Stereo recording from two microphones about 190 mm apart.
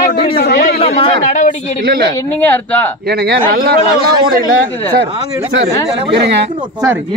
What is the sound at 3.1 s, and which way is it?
Speech, 60° right (ahead or behind).